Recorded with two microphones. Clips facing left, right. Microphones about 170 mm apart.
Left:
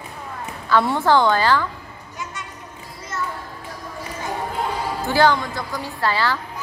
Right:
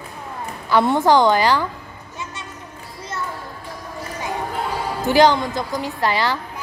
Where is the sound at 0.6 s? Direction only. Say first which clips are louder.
Right 2 dB; 20° right (ahead or behind).